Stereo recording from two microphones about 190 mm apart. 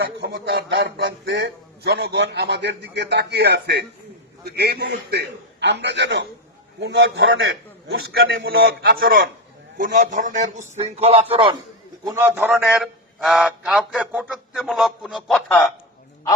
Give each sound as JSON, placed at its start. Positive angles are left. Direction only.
{"t": 0.0, "sound": "a man's voice", "side_deg": -60}
{"t": 12.0, "sound": "a man's voice", "side_deg": -15}